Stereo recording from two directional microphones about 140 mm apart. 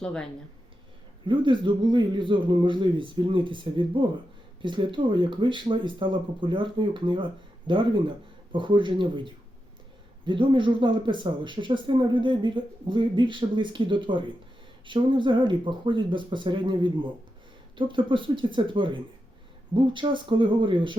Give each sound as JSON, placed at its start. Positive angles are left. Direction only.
{"t": 0.0, "sound": "speech", "side_deg": 5}
{"t": 1.3, "sound": "speech", "side_deg": -35}